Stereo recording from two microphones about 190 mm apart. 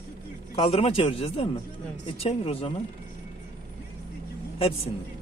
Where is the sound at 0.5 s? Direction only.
30° left (ahead or behind).